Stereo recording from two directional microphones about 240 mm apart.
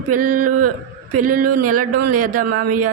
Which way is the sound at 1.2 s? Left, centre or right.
Right.